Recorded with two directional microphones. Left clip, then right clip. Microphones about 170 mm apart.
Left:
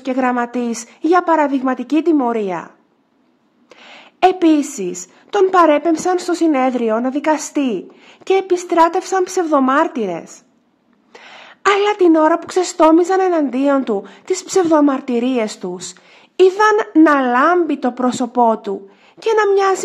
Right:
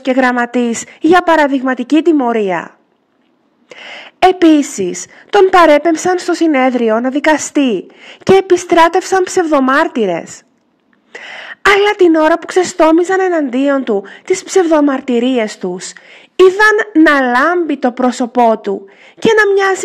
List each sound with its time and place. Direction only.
0.0 s a woman's voice: 25° right (ahead or behind)
3.7 s a woman's voice: 25° right (ahead or behind)
6.1 s speech: centre (ahead or behind)
6.4 s a woman's voice: 25° right (ahead or behind)
12.4 s speech: centre (ahead or behind)
13.1 s a woman's voice: 20° right (ahead or behind)
14.3 s speech: centre (ahead or behind)
14.7 s a woman's voice: 15° right (ahead or behind)
15.4 s speech: centre (ahead or behind)
16.5 s a woman's voice: 20° right (ahead or behind)